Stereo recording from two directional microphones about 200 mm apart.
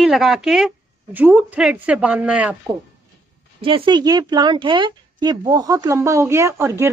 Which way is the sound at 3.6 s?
25° right (ahead or behind).